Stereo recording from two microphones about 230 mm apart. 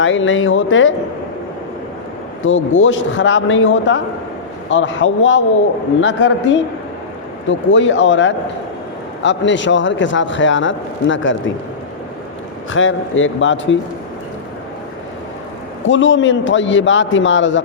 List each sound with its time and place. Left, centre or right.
0.0 s a man's voice: left
2.4 s a man's voice: left
7.7 s speech: left
12.7 s a man's voice: left
15.9 s a man's voice: left